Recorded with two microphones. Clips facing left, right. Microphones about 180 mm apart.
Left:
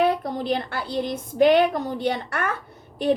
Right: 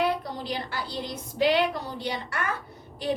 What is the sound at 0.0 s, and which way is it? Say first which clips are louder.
A woman's voice: left 5 dB; 50° left (ahead or behind).